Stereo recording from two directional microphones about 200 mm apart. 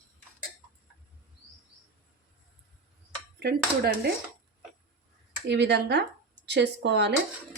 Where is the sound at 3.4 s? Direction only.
55° right (ahead or behind).